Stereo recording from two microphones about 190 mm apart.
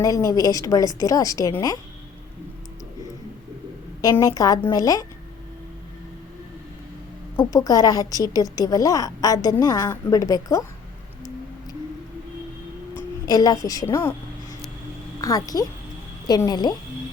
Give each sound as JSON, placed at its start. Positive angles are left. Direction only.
{"t": 0.0, "sound": "a woman's voice", "side_deg": 20}
{"t": 4.0, "sound": "a woman's voice", "side_deg": 20}
{"t": 7.3, "sound": "a woman's voice", "side_deg": 20}
{"t": 12.9, "sound": "speech", "side_deg": 20}
{"t": 15.2, "sound": "a woman's voice", "side_deg": 20}